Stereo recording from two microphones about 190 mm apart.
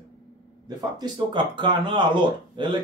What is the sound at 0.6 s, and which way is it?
Speech, 25° right (ahead or behind).